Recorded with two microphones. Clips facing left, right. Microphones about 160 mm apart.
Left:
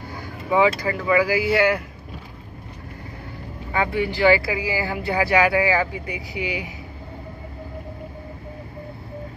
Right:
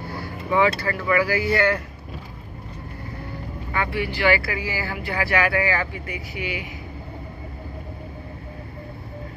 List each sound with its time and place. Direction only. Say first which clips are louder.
0.2 s speech: left 2 dB; 15° left (ahead or behind)
3.7 s speech: left 3 dB; 20° left (ahead or behind)